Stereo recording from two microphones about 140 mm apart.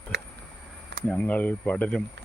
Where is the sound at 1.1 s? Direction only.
10° left (ahead or behind).